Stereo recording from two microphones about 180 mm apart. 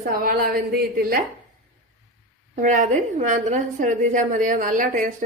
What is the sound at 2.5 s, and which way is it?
A woman's voice, 45° right (ahead or behind).